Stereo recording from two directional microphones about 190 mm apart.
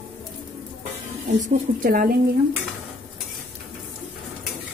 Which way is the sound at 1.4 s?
40° right (ahead or behind).